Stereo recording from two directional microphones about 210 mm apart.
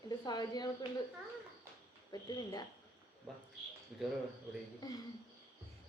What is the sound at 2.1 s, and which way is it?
Speech, 20° left (ahead or behind).